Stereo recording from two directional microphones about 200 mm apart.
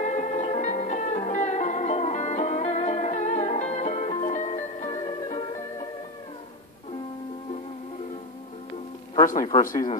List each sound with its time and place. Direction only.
0.0 s music: 35° left (ahead or behind)
9.2 s speech: 40° left (ahead or behind)